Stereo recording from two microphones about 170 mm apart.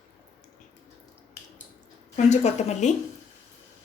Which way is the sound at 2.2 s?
40° left (ahead or behind).